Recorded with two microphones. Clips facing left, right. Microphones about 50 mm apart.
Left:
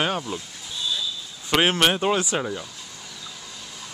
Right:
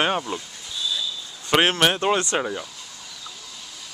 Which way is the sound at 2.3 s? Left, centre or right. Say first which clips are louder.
Right 2 dB; centre.